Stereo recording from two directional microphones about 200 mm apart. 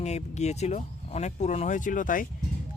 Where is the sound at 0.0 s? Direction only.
35° left (ahead or behind).